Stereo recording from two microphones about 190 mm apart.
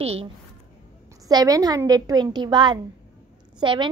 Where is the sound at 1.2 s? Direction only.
20° right (ahead or behind).